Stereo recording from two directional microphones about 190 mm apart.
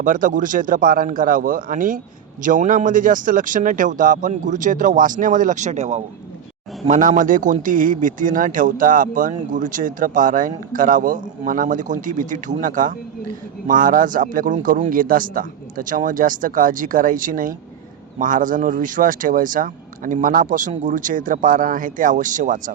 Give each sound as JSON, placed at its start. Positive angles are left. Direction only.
{"t": 0.0, "sound": "a man's voice", "side_deg": -45}